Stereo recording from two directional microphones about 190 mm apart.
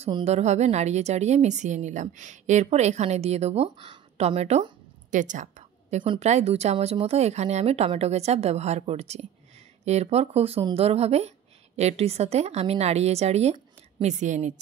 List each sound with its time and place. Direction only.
0.0 s a woman's voice: 35° right (ahead or behind)